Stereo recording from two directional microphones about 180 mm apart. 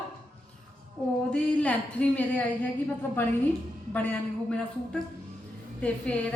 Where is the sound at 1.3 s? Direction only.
5° left (ahead or behind).